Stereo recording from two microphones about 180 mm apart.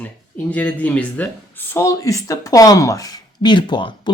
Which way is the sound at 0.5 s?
10° left (ahead or behind).